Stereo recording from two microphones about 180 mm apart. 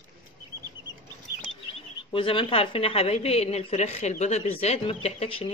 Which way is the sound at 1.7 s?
30° left (ahead or behind).